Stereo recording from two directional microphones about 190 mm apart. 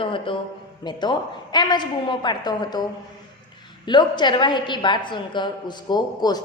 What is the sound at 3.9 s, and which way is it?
A woman's voice, 25° left (ahead or behind).